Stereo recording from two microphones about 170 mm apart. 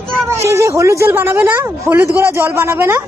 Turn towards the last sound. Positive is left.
turn(degrees=-15)  # may be behind; listen again after turning